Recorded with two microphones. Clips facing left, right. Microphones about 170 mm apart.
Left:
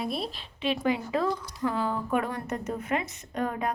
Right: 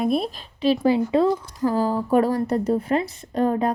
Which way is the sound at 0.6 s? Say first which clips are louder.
Right 8 dB; 35° right (ahead or behind).